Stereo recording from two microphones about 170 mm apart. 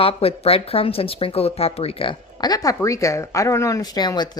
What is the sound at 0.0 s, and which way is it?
Speech, 35° left (ahead or behind).